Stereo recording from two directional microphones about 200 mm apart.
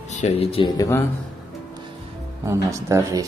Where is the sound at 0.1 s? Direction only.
30° left (ahead or behind); by 1.0 s 15° left (ahead or behind).